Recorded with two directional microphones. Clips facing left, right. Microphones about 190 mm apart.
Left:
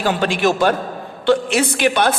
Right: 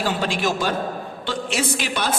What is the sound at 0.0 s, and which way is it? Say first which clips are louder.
A man's voice: left 5 dB; 65° left (ahead or behind).